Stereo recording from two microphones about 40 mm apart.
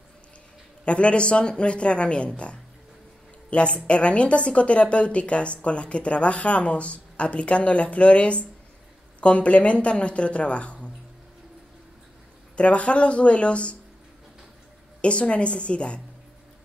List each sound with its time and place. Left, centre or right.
0.8 s a woman's voice: left
12.5 s speech: left
15.0 s speech: left